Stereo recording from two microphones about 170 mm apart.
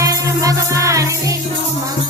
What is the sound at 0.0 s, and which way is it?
Music, 20° right (ahead or behind).